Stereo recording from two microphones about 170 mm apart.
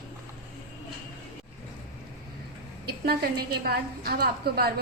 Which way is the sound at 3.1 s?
65° right (ahead or behind).